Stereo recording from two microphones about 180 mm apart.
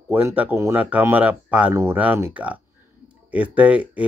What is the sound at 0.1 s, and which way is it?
Speech, 10° right (ahead or behind).